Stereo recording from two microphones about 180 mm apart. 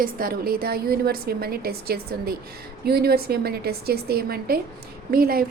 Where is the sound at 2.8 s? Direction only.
60° right (ahead or behind).